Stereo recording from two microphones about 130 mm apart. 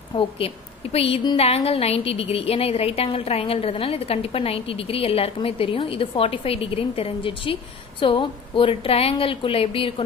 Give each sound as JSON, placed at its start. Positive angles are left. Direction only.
{"t": 0.4, "sound": "a woman's voice", "side_deg": 50}